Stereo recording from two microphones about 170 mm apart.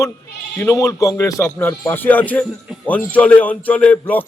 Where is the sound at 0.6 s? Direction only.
20° left (ahead or behind).